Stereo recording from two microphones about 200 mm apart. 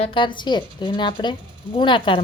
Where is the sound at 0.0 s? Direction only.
25° left (ahead or behind).